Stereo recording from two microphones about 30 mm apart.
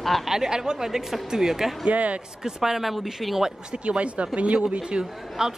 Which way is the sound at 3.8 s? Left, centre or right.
Right.